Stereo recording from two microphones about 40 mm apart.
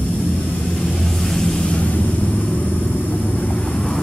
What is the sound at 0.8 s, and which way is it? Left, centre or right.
Vehicle, centre.